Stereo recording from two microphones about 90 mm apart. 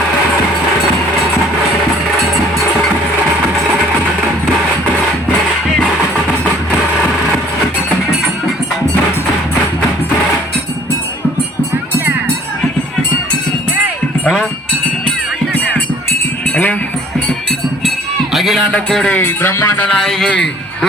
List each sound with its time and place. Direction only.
18.3 s a sound: centre (ahead or behind)
18.9 s music: 5° left (ahead or behind)
19.1 s speech: 25° left (ahead or behind)
19.8 s speech: 10° left (ahead or behind)